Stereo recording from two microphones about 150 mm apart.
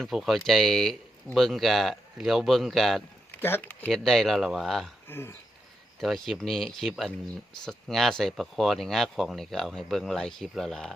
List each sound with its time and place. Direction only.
0.0 s speech: centre (ahead or behind)
3.4 s speech: 15° left (ahead or behind)
5.0 s speech: 15° left (ahead or behind)
6.0 s speech: centre (ahead or behind)